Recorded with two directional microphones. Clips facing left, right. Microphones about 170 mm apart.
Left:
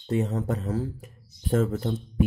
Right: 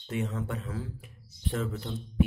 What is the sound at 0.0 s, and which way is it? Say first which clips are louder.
Speech: left 6 dB; 35° left (ahead or behind).